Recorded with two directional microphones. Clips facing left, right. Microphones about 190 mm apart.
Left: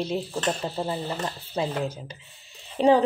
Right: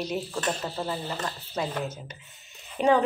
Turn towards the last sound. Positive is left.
turn(degrees=30)  # may be behind; listen again after turning